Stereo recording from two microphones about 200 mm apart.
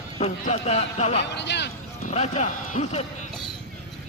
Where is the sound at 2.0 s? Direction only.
35° left (ahead or behind).